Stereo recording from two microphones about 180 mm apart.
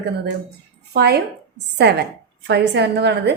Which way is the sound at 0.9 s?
65° right (ahead or behind).